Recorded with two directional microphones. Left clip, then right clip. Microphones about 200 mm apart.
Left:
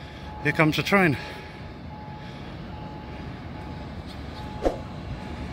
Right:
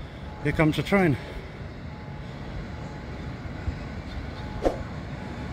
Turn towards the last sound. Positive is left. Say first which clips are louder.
# even
turn(degrees=0)  # may be behind; listen again after turning